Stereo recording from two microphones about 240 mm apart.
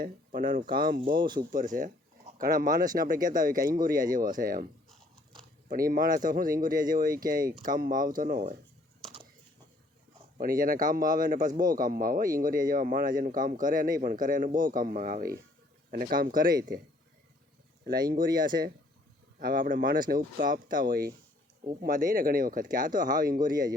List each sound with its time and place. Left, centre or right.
0.0 s a man's voice: right
5.6 s a man's voice: right
10.3 s a man's voice: right
17.8 s a man's voice: right